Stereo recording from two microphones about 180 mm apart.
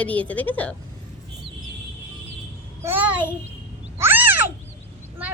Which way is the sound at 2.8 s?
10° right (ahead or behind).